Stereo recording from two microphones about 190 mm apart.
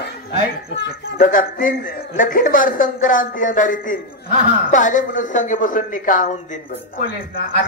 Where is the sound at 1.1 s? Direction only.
45° left (ahead or behind).